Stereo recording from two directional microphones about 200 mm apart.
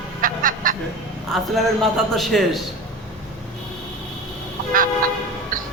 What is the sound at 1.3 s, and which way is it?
A man's voice, centre (ahead or behind).